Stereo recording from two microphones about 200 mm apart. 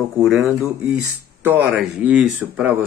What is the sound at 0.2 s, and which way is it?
Speech, centre (ahead or behind).